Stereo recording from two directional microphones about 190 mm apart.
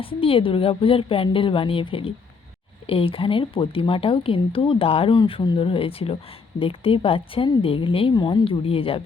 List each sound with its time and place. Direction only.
0.0 s speech: 30° left (ahead or behind)